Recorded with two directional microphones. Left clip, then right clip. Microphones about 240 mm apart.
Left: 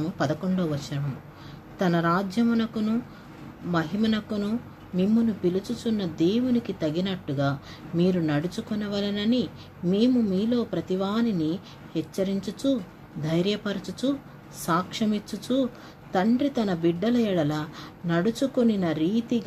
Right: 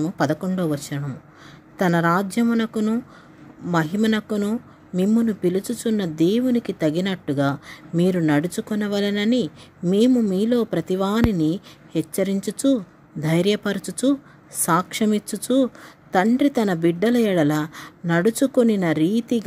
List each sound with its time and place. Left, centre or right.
0.0 s speech: right